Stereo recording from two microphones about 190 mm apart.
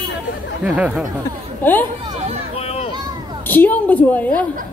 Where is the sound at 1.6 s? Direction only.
10° left (ahead or behind).